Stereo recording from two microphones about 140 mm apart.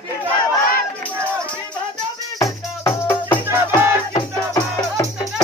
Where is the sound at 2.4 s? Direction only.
20° left (ahead or behind).